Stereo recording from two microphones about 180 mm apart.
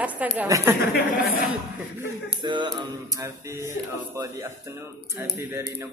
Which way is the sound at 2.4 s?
25° right (ahead or behind).